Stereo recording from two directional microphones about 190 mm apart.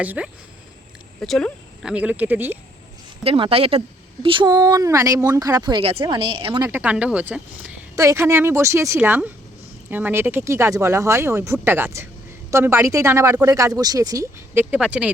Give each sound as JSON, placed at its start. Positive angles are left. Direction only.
{"t": 0.0, "sound": "speech", "side_deg": -5}
{"t": 1.2, "sound": "speech", "side_deg": 5}
{"t": 3.2, "sound": "speech", "side_deg": -30}
{"t": 6.7, "sound": "speech", "side_deg": -10}